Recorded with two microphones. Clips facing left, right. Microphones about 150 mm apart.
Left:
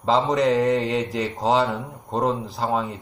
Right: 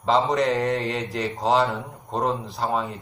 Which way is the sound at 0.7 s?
20° left (ahead or behind).